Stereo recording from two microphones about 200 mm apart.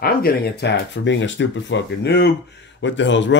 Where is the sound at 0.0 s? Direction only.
50° left (ahead or behind).